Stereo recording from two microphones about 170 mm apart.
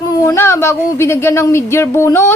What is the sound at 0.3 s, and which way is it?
Speech, 15° left (ahead or behind).